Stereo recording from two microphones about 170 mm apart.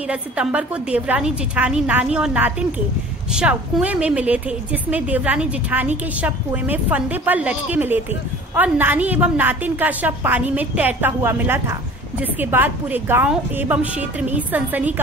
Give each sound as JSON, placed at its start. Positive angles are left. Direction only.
{"t": 0.1, "sound": "a woman's voice", "side_deg": -5}